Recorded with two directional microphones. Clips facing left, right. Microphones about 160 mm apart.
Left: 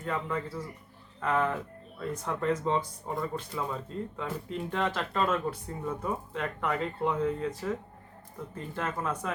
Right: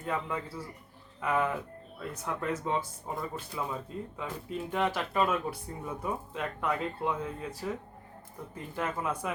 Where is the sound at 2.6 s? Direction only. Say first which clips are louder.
Left 3 dB; 5° right (ahead or behind).